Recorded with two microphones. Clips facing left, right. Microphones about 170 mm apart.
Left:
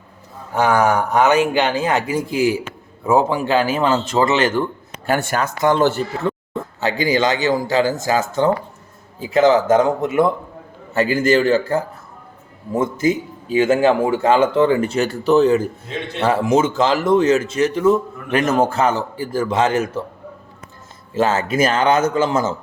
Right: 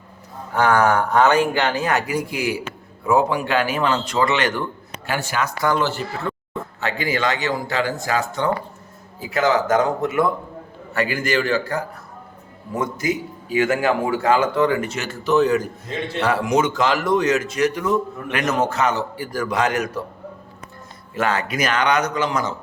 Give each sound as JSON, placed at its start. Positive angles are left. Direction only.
{"t": 0.5, "sound": "a man's voice", "side_deg": 15}
{"t": 5.0, "sound": "speech", "side_deg": 50}
{"t": 5.5, "sound": "a man's voice", "side_deg": 20}
{"t": 7.1, "sound": "a man's voice", "side_deg": 20}
{"t": 7.7, "sound": "speech", "side_deg": 40}
{"t": 8.0, "sound": "a man's voice", "side_deg": 20}
{"t": 21.2, "sound": "a man's voice", "side_deg": 25}